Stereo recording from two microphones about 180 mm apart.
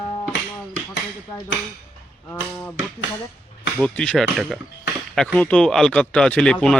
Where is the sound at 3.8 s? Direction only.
5° left (ahead or behind).